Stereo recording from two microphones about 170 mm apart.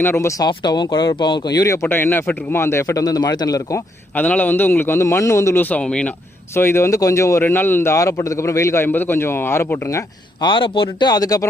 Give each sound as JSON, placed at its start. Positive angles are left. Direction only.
{"t": 0.0, "sound": "speech", "side_deg": 15}
{"t": 4.1, "sound": "a man's voice", "side_deg": 10}
{"t": 10.4, "sound": "speech", "side_deg": 30}